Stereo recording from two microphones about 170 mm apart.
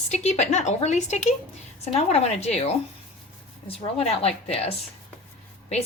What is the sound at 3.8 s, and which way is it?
Speech, 40° left (ahead or behind).